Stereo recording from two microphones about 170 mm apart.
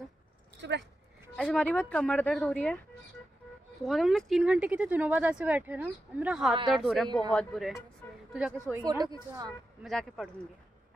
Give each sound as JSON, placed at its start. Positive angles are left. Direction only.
{"t": 0.6, "sound": "speech", "side_deg": -90}
{"t": 1.3, "sound": "speech", "side_deg": 5}
{"t": 3.8, "sound": "a woman's voice", "side_deg": 0}
{"t": 8.7, "sound": "speech", "side_deg": -25}
{"t": 9.8, "sound": "speech", "side_deg": 0}